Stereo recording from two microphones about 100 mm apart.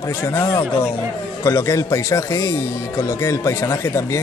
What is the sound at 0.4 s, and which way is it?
Speech, 30° left (ahead or behind).